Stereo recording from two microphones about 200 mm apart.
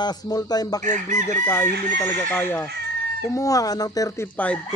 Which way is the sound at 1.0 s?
15° left (ahead or behind).